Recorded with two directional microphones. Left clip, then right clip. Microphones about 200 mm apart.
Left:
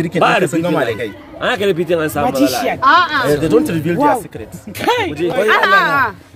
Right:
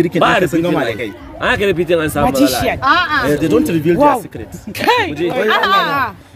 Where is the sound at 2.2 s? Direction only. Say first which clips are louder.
Right 2 dB; 40° right (ahead or behind).